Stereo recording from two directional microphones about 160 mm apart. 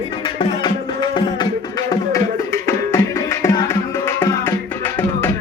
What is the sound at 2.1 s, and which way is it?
Music, 15° left (ahead or behind).